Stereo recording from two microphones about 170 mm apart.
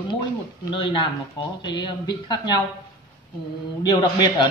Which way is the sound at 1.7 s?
25° left (ahead or behind).